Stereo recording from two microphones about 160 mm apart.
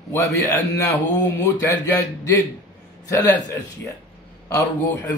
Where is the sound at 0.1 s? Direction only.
20° left (ahead or behind).